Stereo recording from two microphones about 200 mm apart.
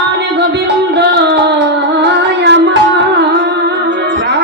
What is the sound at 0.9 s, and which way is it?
Music, 55° right (ahead or behind).